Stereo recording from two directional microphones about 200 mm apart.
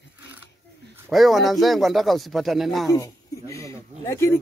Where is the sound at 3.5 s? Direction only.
15° left (ahead or behind).